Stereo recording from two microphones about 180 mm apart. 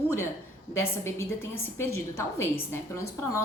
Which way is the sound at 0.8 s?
15° left (ahead or behind).